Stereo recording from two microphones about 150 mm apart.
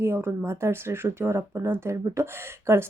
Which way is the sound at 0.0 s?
15° right (ahead or behind).